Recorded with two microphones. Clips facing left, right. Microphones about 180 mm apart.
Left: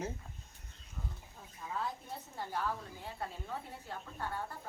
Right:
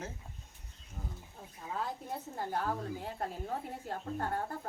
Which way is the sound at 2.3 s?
55° right (ahead or behind).